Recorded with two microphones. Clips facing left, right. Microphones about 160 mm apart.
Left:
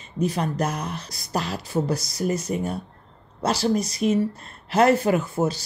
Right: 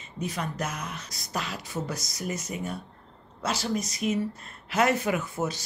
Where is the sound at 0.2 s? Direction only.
35° left (ahead or behind).